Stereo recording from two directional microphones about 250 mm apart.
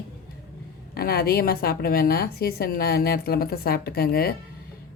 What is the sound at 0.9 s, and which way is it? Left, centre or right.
A woman's voice, left.